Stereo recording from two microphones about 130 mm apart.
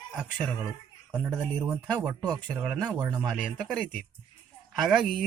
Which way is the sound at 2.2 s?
30° right (ahead or behind).